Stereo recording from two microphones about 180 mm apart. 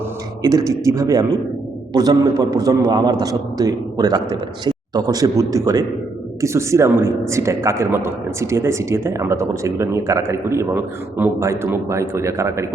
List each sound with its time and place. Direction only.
0.4 s a man's voice: 20° right (ahead or behind)